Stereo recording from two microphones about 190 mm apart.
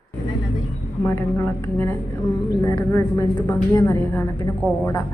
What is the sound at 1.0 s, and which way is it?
A woman's voice, 15° left (ahead or behind).